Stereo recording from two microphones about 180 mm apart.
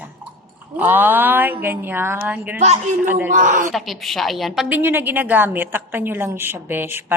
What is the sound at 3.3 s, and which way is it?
Speech, 45° right (ahead or behind).